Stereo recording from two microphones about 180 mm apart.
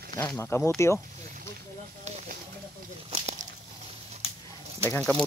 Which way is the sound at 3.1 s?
40° right (ahead or behind).